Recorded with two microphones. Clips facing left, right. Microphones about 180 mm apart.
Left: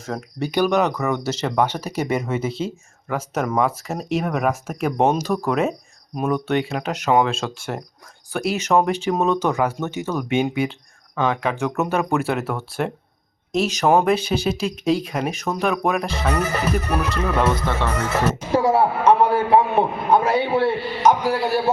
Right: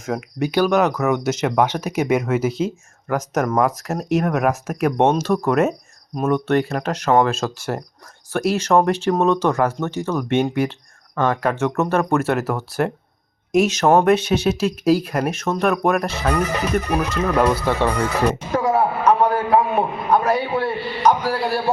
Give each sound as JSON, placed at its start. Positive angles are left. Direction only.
{"t": 0.0, "sound": "speech", "side_deg": -5}
{"t": 17.5, "sound": "speech", "side_deg": -10}
{"t": 17.9, "sound": "speech", "side_deg": 5}
{"t": 18.5, "sound": "a man's voice", "side_deg": 30}